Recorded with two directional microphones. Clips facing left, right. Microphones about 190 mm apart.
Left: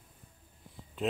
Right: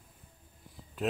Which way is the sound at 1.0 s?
Centre (ahead or behind).